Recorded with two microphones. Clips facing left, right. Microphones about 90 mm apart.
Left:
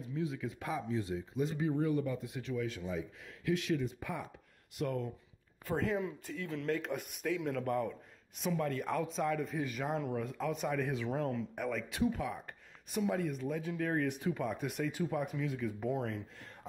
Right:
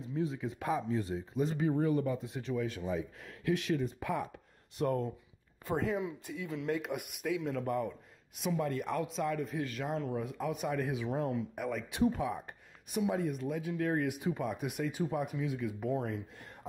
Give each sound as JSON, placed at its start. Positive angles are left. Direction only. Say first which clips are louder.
{"t": 0.1, "sound": "speech", "louder": "right 3 dB", "side_deg": -35}
{"t": 2.5, "sound": "speech", "louder": "right 3 dB", "side_deg": -45}
{"t": 4.7, "sound": "speech", "louder": "right 4 dB", "side_deg": -35}
{"t": 5.8, "sound": "speech", "louder": "even", "side_deg": -5}
{"t": 10.2, "sound": "speech", "louder": "even", "side_deg": -10}